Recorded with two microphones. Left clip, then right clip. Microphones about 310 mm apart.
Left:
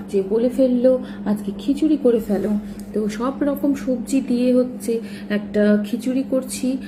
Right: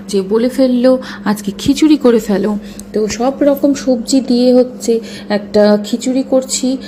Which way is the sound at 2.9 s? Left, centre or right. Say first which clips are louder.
Right 9 dB; centre.